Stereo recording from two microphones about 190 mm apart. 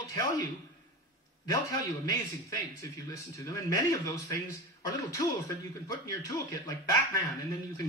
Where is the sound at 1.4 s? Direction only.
15° left (ahead or behind).